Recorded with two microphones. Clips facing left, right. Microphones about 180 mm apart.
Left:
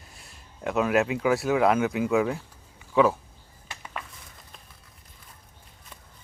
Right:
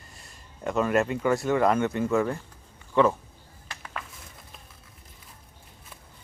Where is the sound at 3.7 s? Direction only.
10° left (ahead or behind).